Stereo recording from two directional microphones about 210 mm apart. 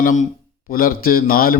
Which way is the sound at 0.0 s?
40° left (ahead or behind).